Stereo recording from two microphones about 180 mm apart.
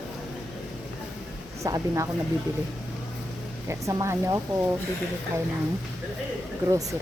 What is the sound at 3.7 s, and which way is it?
Speech, 15° right (ahead or behind).